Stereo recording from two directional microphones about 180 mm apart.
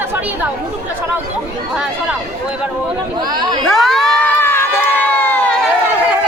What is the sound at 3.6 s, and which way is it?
Crowd, centre (ahead or behind).